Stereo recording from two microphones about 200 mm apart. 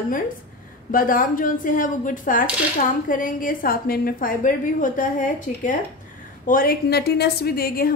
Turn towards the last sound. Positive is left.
turn(degrees=50)  # may be behind; listen again after turning